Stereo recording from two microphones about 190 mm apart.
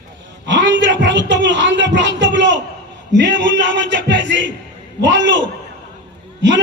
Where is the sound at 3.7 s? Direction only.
65° right (ahead or behind).